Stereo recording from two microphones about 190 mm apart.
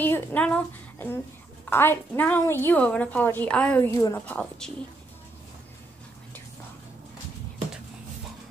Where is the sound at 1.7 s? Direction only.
10° left (ahead or behind).